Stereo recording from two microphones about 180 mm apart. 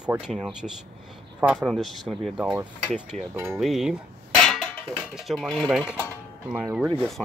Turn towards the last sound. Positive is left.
turn(degrees=0)  # may be behind; listen again after turning